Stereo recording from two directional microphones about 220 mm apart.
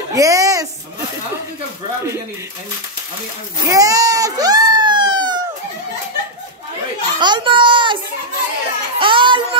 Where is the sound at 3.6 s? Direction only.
15° right (ahead or behind).